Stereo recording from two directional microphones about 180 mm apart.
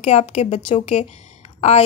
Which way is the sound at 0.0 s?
35° left (ahead or behind).